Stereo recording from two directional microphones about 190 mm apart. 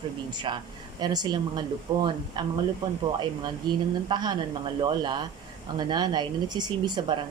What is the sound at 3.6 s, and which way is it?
Speech, 20° right (ahead or behind).